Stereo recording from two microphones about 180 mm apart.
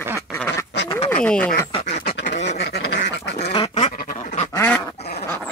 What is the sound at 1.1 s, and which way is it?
Speech, 5° left (ahead or behind).